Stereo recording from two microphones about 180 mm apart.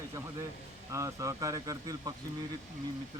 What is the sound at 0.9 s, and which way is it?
Speech, 15° right (ahead or behind).